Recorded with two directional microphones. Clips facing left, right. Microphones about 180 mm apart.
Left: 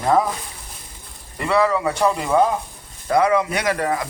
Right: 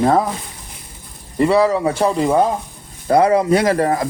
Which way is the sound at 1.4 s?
30° right (ahead or behind).